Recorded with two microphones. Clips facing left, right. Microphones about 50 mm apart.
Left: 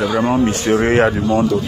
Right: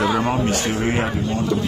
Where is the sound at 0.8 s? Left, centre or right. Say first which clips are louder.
Left 10 dB; left.